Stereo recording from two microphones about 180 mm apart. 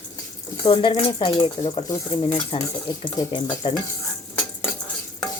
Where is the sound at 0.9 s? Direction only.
30° left (ahead or behind).